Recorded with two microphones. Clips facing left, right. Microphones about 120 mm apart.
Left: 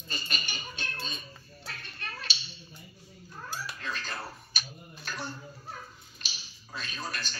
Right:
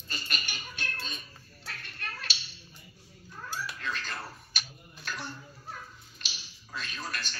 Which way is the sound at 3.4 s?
15° left (ahead or behind).